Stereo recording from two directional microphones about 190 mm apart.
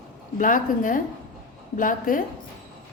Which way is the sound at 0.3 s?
45° left (ahead or behind).